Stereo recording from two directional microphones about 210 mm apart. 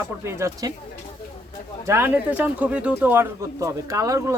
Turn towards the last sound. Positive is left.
turn(degrees=-15)  # may be behind; listen again after turning